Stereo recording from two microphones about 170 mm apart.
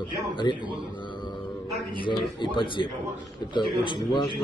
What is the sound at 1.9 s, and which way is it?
A man's voice, 30° left (ahead or behind).